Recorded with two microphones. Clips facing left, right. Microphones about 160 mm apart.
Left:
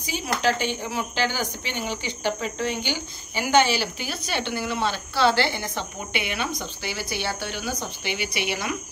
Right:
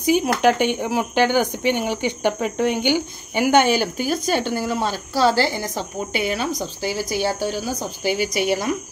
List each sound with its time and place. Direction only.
0.0 s speech: 55° right (ahead or behind)